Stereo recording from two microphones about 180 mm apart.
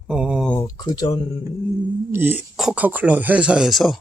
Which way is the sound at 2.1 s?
10° right (ahead or behind).